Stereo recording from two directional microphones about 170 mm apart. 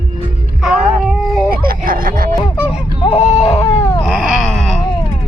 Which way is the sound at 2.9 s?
35° left (ahead or behind).